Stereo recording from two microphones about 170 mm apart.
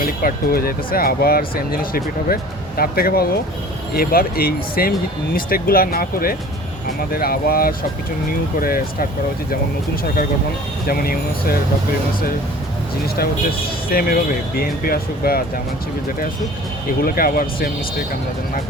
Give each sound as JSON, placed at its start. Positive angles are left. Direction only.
{"t": 0.0, "sound": "speech", "side_deg": 60}
{"t": 10.8, "sound": "speech", "side_deg": 60}
{"t": 13.9, "sound": "speech", "side_deg": 60}
{"t": 17.0, "sound": "speech", "side_deg": 60}